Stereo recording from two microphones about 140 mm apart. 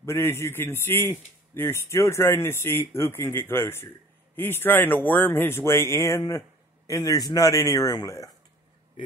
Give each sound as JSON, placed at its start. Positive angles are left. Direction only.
{"t": 0.0, "sound": "a man's voice", "side_deg": 20}